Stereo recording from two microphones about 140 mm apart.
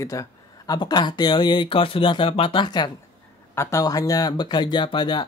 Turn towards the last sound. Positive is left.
turn(degrees=35)  # may be behind; listen again after turning